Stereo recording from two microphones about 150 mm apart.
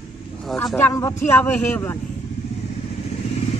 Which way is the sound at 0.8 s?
20° left (ahead or behind).